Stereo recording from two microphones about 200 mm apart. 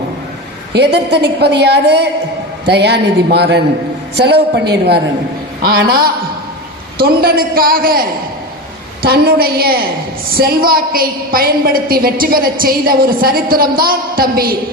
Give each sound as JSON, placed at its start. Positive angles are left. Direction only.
{"t": 0.7, "sound": "a woman's voice", "side_deg": -55}
{"t": 5.6, "sound": "a woman's voice", "side_deg": -50}